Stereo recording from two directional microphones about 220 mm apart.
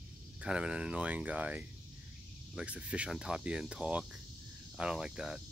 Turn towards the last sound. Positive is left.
turn(degrees=-5)  # may be behind; listen again after turning